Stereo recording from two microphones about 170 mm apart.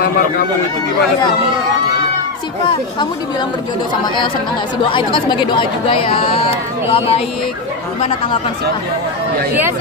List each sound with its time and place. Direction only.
4.8 s speech: 30° left (ahead or behind)